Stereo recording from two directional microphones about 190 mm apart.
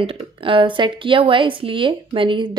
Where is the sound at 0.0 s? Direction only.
30° right (ahead or behind).